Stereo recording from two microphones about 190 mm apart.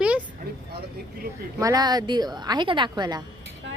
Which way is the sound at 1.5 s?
20° right (ahead or behind).